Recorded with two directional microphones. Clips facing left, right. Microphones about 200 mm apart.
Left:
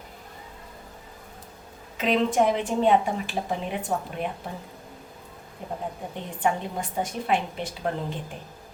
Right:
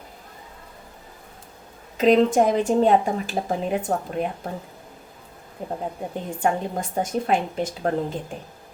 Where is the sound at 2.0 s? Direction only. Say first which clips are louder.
Right 6 dB; 40° right (ahead or behind).